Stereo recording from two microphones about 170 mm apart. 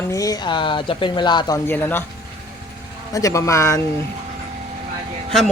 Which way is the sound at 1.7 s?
10° left (ahead or behind).